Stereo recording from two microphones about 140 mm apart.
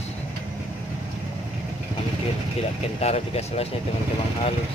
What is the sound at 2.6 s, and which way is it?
Speech, 50° left (ahead or behind).